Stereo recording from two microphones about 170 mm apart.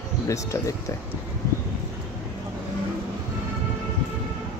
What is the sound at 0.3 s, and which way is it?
Speech, 20° left (ahead or behind).